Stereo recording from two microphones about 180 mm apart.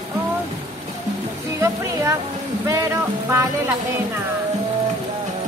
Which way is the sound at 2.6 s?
15° right (ahead or behind).